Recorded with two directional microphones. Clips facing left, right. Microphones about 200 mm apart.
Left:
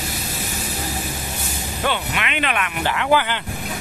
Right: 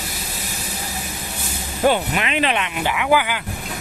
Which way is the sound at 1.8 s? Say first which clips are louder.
Right 6 dB; 40° right (ahead or behind).